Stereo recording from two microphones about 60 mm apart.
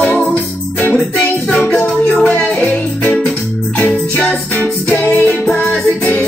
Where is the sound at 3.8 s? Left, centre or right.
Left.